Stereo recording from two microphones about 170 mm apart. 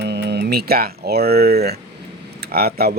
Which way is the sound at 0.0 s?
75° right (ahead or behind).